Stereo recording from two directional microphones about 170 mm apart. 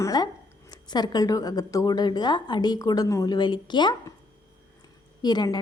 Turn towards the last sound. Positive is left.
turn(degrees=25)  # may be behind; listen again after turning